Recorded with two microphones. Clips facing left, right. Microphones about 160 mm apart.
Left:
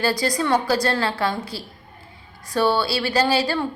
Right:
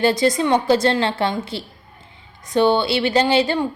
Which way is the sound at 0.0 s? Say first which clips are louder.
Right 5 dB; 25° right (ahead or behind).